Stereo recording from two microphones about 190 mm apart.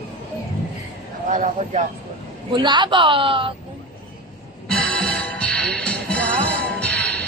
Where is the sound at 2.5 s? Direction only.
25° right (ahead or behind).